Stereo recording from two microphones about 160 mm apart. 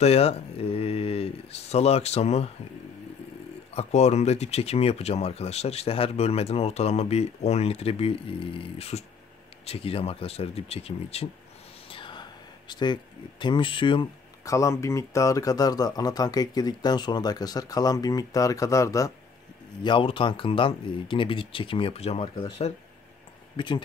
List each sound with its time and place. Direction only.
0.0 s speech: 40° left (ahead or behind)
3.7 s speech: 45° left (ahead or behind)
11.9 s a sound: 30° left (ahead or behind)
14.5 s speech: 20° left (ahead or behind)
19.8 s speech: 30° left (ahead or behind)